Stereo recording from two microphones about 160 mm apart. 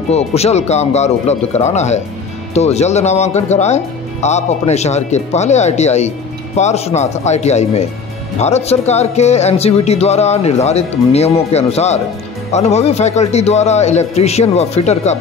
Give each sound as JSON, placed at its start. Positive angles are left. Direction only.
{"t": 0.1, "sound": "speech", "side_deg": 40}